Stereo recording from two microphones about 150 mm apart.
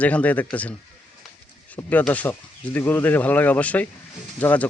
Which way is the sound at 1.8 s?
10° left (ahead or behind).